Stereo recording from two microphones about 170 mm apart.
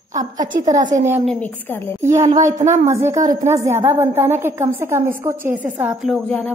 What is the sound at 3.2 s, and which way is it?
Speech, 50° right (ahead or behind).